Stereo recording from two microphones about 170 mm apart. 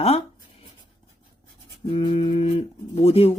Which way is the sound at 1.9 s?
35° left (ahead or behind).